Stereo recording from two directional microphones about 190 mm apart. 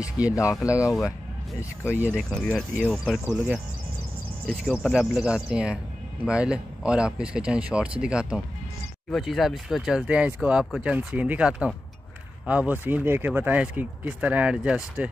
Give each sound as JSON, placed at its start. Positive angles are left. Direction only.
{"t": 0.2, "sound": "speech", "side_deg": -5}
{"t": 0.6, "sound": "speech", "side_deg": 15}
{"t": 2.1, "sound": "speech", "side_deg": 5}
{"t": 4.8, "sound": "speech", "side_deg": -5}